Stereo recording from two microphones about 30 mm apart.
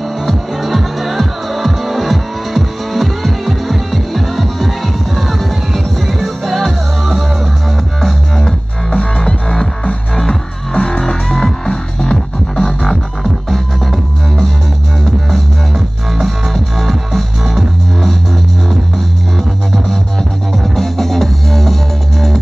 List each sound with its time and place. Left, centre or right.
0.2 s music: centre
8.9 s music: left
10.7 s music: left
11.0 s music: centre
11.3 s music: left
12.6 s music: centre
16.2 s music: centre
20.5 s music: centre